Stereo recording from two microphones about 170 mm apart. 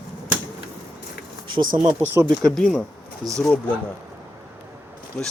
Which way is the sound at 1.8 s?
25° right (ahead or behind).